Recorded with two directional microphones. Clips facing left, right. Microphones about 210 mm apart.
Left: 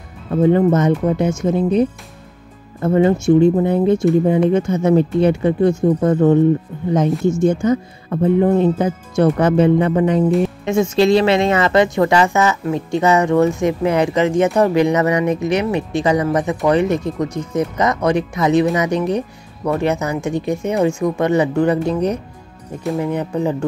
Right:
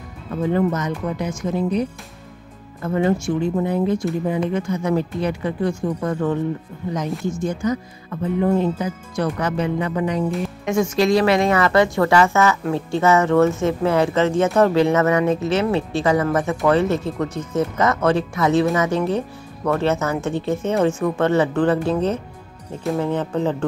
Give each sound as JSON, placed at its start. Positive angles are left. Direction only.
{"t": 0.4, "sound": "speech", "side_deg": 25}